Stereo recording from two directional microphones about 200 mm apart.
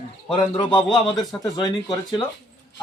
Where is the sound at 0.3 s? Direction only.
25° left (ahead or behind).